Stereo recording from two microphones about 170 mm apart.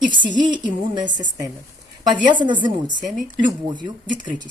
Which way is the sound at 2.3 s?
25° right (ahead or behind).